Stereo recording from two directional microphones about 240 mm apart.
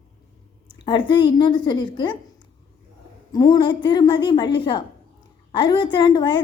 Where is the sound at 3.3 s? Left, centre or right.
Centre.